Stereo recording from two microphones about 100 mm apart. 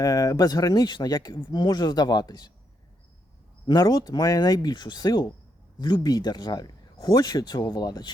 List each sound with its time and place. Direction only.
0.0 s speech: 35° left (ahead or behind)
1.4 s speech: 50° left (ahead or behind)
3.7 s speech: 40° left (ahead or behind)